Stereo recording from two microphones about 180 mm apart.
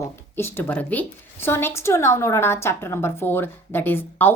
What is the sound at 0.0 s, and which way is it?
A woman's voice, 15° left (ahead or behind).